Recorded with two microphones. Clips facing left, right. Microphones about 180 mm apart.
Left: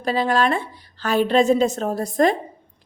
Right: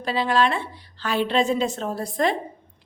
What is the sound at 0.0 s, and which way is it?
A woman's voice, 45° left (ahead or behind).